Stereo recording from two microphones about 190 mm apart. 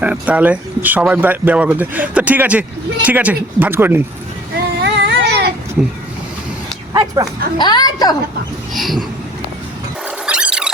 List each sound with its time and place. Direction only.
0.0 s speech: 5° right (ahead or behind)
4.8 s a sound: 65° right (ahead or behind)
5.8 s vehicle: 5° right (ahead or behind)
6.9 s speech: 15° right (ahead or behind)
7.6 s a woman's voice: 20° left (ahead or behind)
8.7 s vehicle: centre (ahead or behind)
10.2 s a sound: 5° right (ahead or behind)